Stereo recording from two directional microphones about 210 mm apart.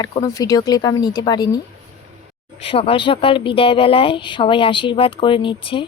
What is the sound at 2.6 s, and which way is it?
Speech, 25° left (ahead or behind).